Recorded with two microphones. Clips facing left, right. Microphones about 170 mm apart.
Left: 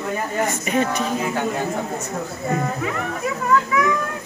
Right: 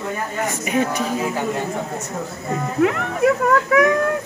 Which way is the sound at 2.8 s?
70° right (ahead or behind).